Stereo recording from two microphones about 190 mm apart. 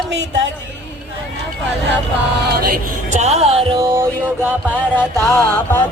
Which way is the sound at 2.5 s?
50° right (ahead or behind).